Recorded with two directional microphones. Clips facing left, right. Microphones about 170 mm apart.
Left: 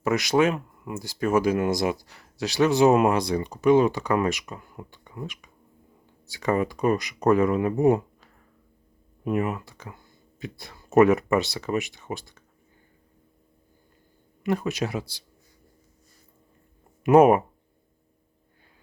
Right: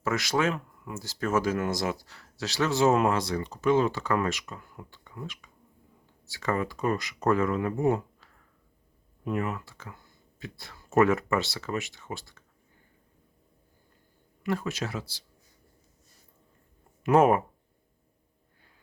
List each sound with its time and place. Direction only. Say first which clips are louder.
0.0 s speech: left 6 dB; 15° left (ahead or behind)
14.4 s speech: left 4 dB; 20° left (ahead or behind)
17.0 s speech: left 5 dB; 15° left (ahead or behind)